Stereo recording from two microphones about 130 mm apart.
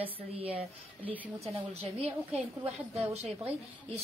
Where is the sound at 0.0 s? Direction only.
45° right (ahead or behind).